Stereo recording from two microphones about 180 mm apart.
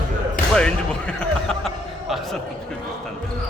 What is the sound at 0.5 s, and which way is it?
Speech, 5° left (ahead or behind).